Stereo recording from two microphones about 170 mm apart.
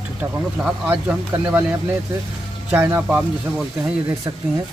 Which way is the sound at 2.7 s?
15° right (ahead or behind).